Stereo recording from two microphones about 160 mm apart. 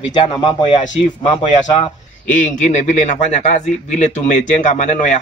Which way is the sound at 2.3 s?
50° left (ahead or behind).